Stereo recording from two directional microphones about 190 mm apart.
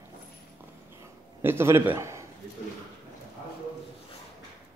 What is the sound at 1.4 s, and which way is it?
Speech, 15° right (ahead or behind).